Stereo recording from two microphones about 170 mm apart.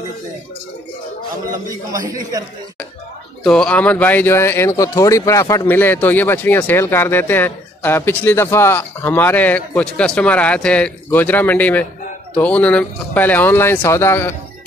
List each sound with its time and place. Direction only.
1.5 s a man's voice: 20° right (ahead or behind)
3.4 s speech: 5° left (ahead or behind)